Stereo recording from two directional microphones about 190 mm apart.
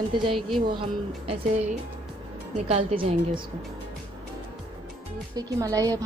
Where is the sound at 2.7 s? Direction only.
35° right (ahead or behind).